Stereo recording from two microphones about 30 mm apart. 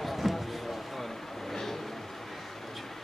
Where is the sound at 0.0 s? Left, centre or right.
Centre.